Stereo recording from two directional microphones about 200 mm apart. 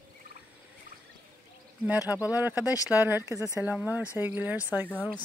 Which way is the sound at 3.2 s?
15° left (ahead or behind).